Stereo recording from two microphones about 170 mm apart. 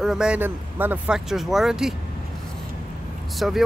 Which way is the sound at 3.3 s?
Centre (ahead or behind).